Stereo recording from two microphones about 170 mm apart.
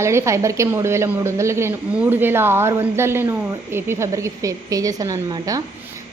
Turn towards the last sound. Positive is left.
turn(degrees=-20)  # may be behind; listen again after turning